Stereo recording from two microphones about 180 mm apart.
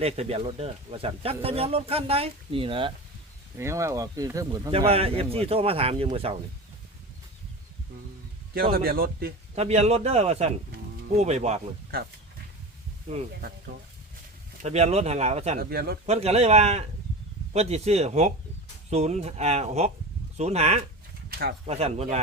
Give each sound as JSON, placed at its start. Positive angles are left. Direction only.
{"t": 0.0, "sound": "speech", "side_deg": -35}
{"t": 3.6, "sound": "speech", "side_deg": -15}
{"t": 4.9, "sound": "speech", "side_deg": -30}
{"t": 8.7, "sound": "speech", "side_deg": -55}
{"t": 9.6, "sound": "speech", "side_deg": -35}
{"t": 11.9, "sound": "speech", "side_deg": -55}
{"t": 13.1, "sound": "speech", "side_deg": -40}
{"t": 14.6, "sound": "speech", "side_deg": -35}
{"t": 15.7, "sound": "speech", "side_deg": -60}
{"t": 16.0, "sound": "speech", "side_deg": -35}
{"t": 21.2, "sound": "a sound", "side_deg": -55}
{"t": 21.7, "sound": "speech", "side_deg": -35}